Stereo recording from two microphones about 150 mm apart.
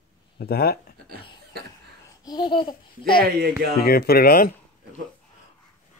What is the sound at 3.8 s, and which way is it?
Speech, 90° left.